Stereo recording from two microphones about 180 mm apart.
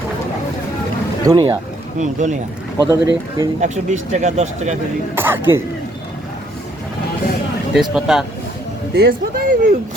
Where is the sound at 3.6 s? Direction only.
40° right (ahead or behind).